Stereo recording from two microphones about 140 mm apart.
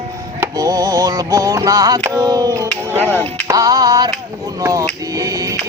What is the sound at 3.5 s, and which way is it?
Music, 25° right (ahead or behind).